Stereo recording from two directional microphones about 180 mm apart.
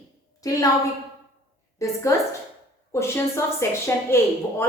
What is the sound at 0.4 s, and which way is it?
Speech, 20° left (ahead or behind).